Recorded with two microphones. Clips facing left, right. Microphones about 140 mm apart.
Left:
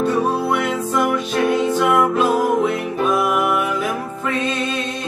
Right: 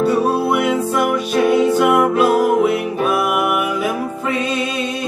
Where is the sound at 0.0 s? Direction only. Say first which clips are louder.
Right 3 dB; 10° right (ahead or behind).